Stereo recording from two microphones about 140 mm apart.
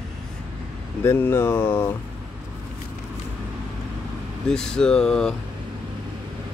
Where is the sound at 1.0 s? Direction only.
15° left (ahead or behind).